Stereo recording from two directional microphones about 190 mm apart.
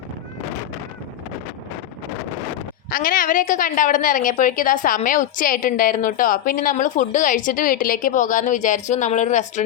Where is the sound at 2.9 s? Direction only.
50° left (ahead or behind).